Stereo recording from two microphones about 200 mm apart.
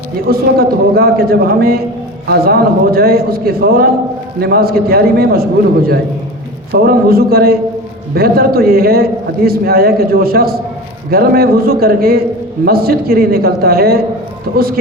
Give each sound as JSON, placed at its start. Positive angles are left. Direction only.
{"t": 0.3, "sound": "a man's voice", "side_deg": -50}